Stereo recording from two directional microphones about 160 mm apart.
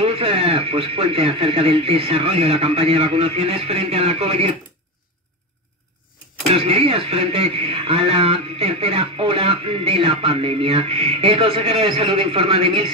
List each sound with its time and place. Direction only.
0.0 s speech: 35° right (ahead or behind)
6.5 s speech: 35° right (ahead or behind)